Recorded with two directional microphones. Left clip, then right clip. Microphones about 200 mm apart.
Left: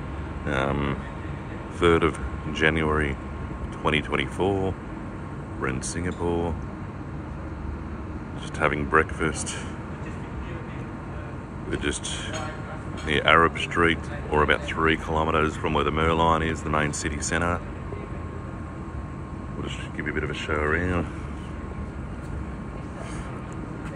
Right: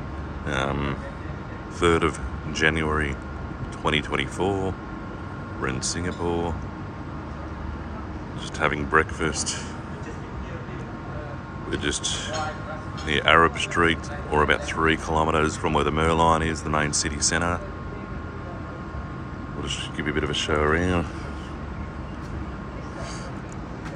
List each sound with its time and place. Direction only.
0.5 s speech: 15° right (ahead or behind)
8.5 s speech: 15° right (ahead or behind)
11.7 s speech: 15° right (ahead or behind)
19.7 s speech: 25° right (ahead or behind)